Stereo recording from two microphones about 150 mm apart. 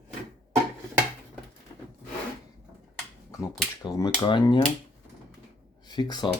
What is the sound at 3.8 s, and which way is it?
Speech, 25° left (ahead or behind).